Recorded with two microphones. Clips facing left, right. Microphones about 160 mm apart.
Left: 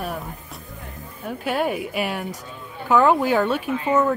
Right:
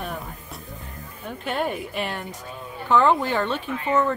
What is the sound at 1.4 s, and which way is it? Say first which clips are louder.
Speech: left 3 dB; 5° left (ahead or behind).